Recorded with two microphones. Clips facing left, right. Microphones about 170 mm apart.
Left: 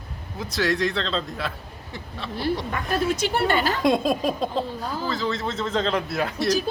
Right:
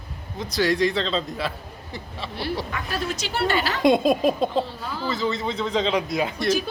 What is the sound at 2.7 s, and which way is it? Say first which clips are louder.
A woman's voice: left 4 dB; 50° left (ahead or behind).